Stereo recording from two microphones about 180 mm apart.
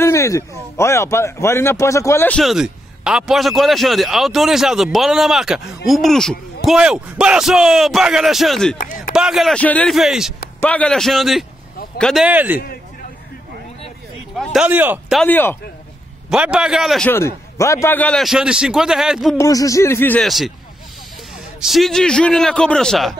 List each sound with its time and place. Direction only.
0.0 s a man's voice: 15° left (ahead or behind)
8.7 s speech: 50° left (ahead or behind)
9.1 s a man's voice: centre (ahead or behind)
14.3 s speech: centre (ahead or behind)
15.1 s a man's voice: 10° left (ahead or behind)
16.3 s a man's voice: 5° right (ahead or behind)
17.1 s a man's voice: 15° left (ahead or behind); by 19.3 s centre (ahead or behind)
19.3 s a man's voice: 20° left (ahead or behind)
20.2 s a man's voice: centre (ahead or behind)
21.5 s a man's voice: centre (ahead or behind)